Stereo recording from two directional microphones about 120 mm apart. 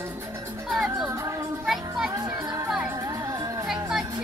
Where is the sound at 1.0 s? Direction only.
25° right (ahead or behind).